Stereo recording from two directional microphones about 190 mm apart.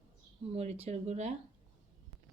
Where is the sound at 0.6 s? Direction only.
35° right (ahead or behind).